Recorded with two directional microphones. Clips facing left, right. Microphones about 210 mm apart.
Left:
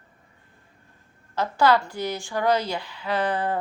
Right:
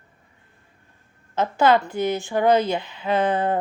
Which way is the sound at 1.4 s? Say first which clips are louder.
Right 2 dB; 20° right (ahead or behind).